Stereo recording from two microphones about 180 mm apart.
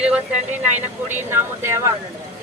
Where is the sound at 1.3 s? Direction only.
15° right (ahead or behind).